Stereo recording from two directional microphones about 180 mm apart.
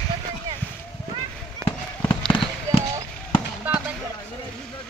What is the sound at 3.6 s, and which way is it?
Fireworks, 10° right (ahead or behind).